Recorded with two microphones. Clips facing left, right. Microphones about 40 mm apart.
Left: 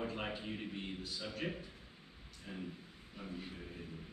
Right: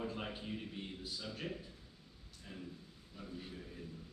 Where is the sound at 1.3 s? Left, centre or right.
Left.